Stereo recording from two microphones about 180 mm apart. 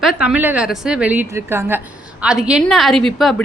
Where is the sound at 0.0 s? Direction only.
Centre (ahead or behind).